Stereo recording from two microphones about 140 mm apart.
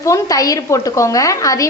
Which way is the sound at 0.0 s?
25° left (ahead or behind).